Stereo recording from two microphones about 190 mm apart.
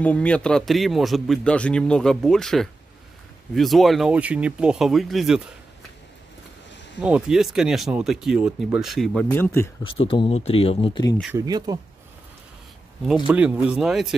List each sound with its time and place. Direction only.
0.0 s speech: 10° left (ahead or behind)
7.0 s speech: 5° right (ahead or behind); by 9.7 s 10° left (ahead or behind)
9.8 s speech: 25° left (ahead or behind)
11.3 s speech: 20° right (ahead or behind)
13.0 s speech: 5° right (ahead or behind)